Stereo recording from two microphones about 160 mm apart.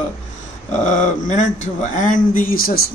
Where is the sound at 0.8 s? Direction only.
50° left (ahead or behind).